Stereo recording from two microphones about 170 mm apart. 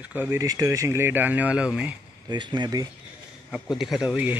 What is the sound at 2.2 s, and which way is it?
Speech, 25° right (ahead or behind).